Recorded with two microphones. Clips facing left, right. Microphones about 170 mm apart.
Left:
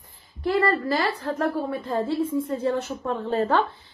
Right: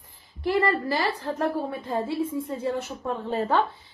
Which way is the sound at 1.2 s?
20° right (ahead or behind).